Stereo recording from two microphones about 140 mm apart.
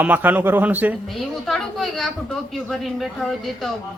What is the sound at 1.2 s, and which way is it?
A woman's voice, centre (ahead or behind).